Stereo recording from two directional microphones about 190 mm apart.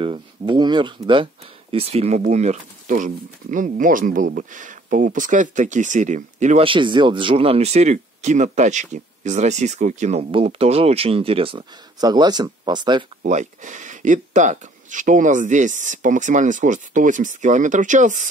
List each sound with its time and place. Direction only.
0.0 s speech: 25° right (ahead or behind)
13.2 s speech: 40° right (ahead or behind)